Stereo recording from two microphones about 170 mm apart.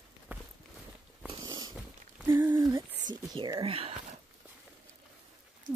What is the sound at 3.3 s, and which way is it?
Speech, 25° right (ahead or behind).